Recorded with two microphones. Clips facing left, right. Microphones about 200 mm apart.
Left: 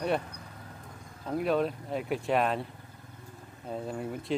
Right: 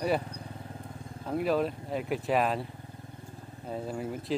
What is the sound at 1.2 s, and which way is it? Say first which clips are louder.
Speech: even; centre (ahead or behind).